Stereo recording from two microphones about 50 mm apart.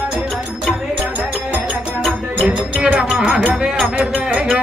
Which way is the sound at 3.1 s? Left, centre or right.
Centre.